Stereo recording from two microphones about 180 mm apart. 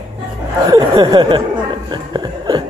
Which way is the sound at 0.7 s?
20° right (ahead or behind).